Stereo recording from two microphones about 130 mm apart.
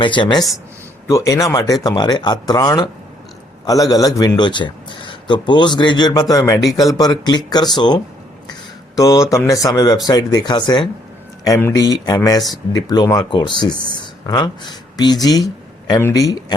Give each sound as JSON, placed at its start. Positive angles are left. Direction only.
{"t": 0.0, "sound": "a man's voice", "side_deg": 35}
{"t": 1.0, "sound": "a man's voice", "side_deg": 25}